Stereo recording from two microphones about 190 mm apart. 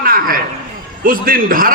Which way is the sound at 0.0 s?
50° right (ahead or behind).